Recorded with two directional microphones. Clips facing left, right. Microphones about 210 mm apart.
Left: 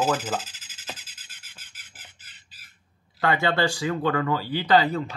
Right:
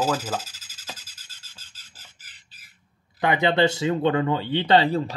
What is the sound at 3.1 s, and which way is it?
Speech, 20° right (ahead or behind).